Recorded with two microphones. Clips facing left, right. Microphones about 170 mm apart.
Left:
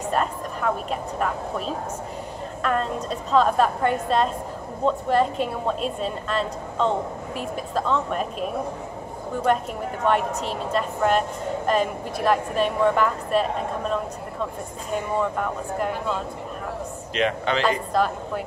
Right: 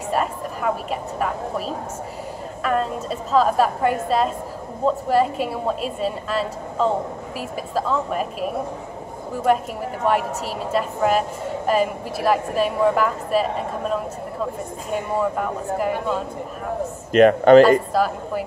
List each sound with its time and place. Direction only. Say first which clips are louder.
0.1 s a woman's voice: right 3 dB; 5° right (ahead or behind)
2.6 s a woman's voice: right 2 dB; 5° right (ahead or behind)
9.5 s a woman's voice: right 3 dB; 5° right (ahead or behind)
15.1 s a woman's voice: right 3 dB; 5° right (ahead or behind)
17.1 s a man's voice: right 13 dB; 50° right (ahead or behind)
17.9 s a woman's voice: right 2 dB; 5° right (ahead or behind)